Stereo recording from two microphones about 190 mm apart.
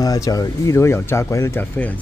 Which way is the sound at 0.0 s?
20° left (ahead or behind).